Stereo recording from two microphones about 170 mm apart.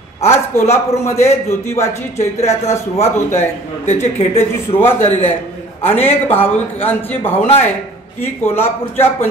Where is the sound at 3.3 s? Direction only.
15° left (ahead or behind).